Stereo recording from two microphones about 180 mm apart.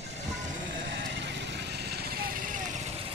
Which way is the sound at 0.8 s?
85° right.